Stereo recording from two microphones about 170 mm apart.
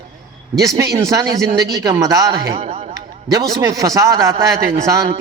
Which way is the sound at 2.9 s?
20° right (ahead or behind).